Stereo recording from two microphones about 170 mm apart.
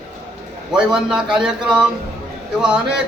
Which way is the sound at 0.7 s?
5° right (ahead or behind).